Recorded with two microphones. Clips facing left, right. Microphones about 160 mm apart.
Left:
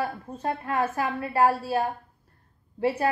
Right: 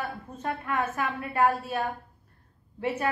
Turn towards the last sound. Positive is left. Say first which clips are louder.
# left 4 dB
turn(degrees=35)  # may be behind; listen again after turning